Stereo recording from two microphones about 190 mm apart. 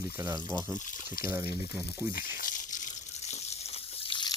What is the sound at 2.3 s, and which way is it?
Water, 45° left (ahead or behind).